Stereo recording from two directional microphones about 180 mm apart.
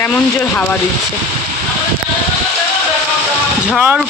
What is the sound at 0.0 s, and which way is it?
Speech, 10° left (ahead or behind).